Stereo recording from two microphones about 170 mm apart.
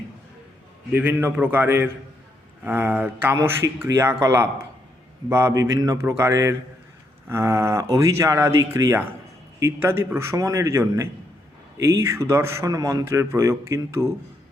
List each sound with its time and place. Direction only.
0.9 s a man's voice: 10° right (ahead or behind)